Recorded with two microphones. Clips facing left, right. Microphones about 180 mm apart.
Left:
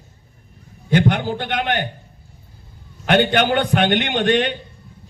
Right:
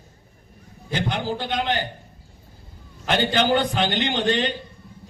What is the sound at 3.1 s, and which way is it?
A man's voice, 65° left (ahead or behind).